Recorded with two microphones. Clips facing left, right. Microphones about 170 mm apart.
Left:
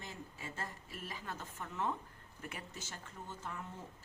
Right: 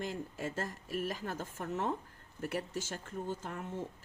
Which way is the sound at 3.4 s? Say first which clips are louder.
Right 4 dB; 50° right (ahead or behind).